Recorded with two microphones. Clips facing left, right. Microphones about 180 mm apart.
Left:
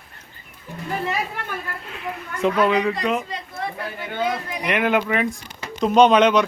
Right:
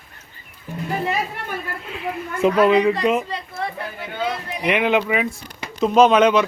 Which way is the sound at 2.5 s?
35° right (ahead or behind).